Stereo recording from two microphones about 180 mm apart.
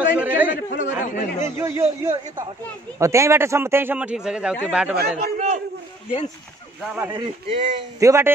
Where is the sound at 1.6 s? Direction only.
15° right (ahead or behind).